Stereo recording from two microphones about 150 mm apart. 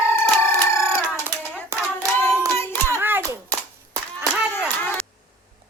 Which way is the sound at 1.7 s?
15° right (ahead or behind).